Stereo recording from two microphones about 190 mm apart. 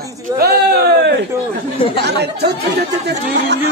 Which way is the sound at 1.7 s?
30° left (ahead or behind).